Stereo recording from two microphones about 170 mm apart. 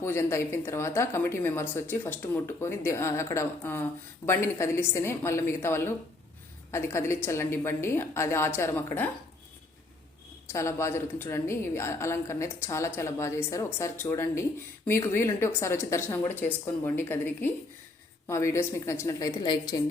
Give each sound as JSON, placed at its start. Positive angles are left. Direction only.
{"t": 0.0, "sound": "a woman's voice", "side_deg": 15}
{"t": 10.5, "sound": "a woman's voice", "side_deg": 15}